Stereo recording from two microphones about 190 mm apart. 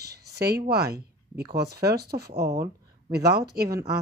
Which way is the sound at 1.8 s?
55° right (ahead or behind).